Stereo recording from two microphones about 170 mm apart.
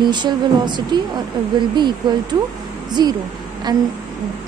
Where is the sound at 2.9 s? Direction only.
25° right (ahead or behind).